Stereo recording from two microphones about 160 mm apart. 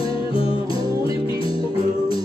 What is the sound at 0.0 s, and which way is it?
Music, 35° left (ahead or behind).